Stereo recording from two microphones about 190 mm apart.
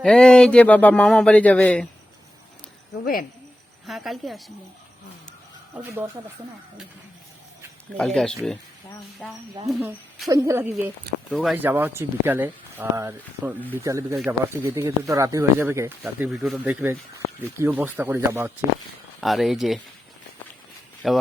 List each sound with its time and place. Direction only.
0.0 s speech: 5° left (ahead or behind)
3.8 s a woman's voice: centre (ahead or behind)
5.8 s speech: 10° right (ahead or behind)
7.9 s a woman's voice: 5° left (ahead or behind)
10.2 s speech: 15° right (ahead or behind)
11.3 s a woman's voice: centre (ahead or behind)
11.5 s speech: 10° right (ahead or behind)
19.2 s a woman's voice: centre (ahead or behind)
21.0 s a woman's voice: centre (ahead or behind)